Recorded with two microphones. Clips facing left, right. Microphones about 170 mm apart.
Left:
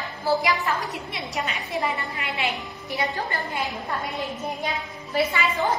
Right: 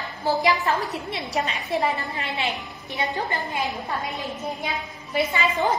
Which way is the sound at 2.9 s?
20° right (ahead or behind).